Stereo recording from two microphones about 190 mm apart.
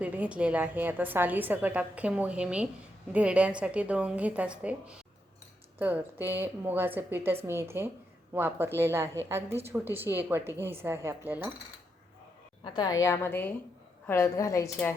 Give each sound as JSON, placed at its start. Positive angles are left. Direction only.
{"t": 0.0, "sound": "a woman's voice", "side_deg": -10}
{"t": 12.6, "sound": "a woman's voice", "side_deg": 20}